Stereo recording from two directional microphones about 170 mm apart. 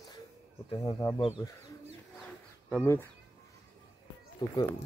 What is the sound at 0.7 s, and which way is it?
Speech, 25° left (ahead or behind).